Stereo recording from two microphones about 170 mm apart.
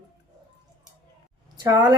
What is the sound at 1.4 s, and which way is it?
Speech, 25° right (ahead or behind).